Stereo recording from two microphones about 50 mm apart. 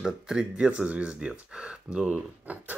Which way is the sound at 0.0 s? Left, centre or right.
Centre.